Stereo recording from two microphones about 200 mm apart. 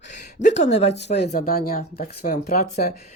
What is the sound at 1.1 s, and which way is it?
Speech, 50° left (ahead or behind).